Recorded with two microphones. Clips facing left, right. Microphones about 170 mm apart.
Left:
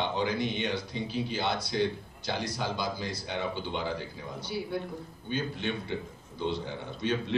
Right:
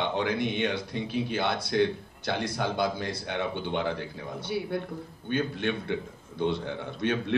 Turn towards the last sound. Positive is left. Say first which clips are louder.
# right 3 dB
turn(degrees=-60)  # may be behind; listen again after turning